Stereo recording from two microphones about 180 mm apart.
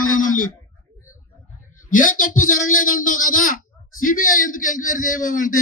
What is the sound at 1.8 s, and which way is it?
A man's voice, 50° left (ahead or behind).